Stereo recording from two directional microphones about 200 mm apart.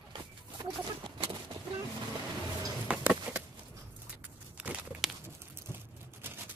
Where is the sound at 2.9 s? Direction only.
5° right (ahead or behind).